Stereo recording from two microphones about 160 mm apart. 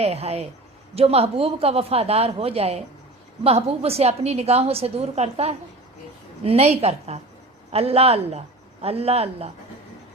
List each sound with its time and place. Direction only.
0.0 s a woman's voice: 40° right (ahead or behind)